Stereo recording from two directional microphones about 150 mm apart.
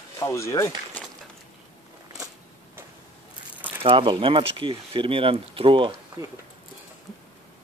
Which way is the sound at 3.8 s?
35° right (ahead or behind).